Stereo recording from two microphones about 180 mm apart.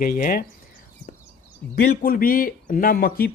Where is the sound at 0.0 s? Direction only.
55° left (ahead or behind).